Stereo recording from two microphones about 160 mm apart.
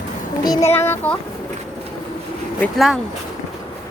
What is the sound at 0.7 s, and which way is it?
Child singing, 15° left (ahead or behind).